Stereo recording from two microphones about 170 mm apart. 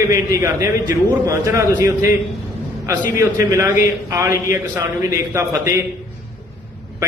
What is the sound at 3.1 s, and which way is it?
A man's voice, 15° right (ahead or behind).